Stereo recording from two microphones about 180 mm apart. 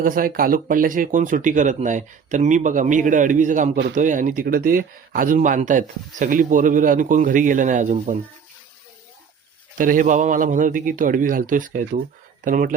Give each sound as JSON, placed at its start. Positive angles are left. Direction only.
{"t": 0.0, "sound": "speech", "side_deg": -50}
{"t": 9.7, "sound": "speech", "side_deg": -50}